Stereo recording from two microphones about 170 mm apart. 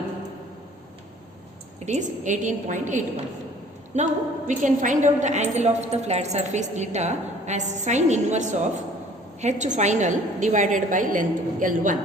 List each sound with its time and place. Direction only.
1.8 s a woman's voice: 45° right (ahead or behind)